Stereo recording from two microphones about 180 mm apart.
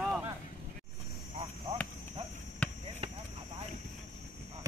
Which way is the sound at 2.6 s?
10° left (ahead or behind).